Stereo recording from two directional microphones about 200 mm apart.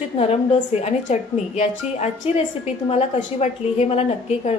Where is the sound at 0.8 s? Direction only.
35° left (ahead or behind).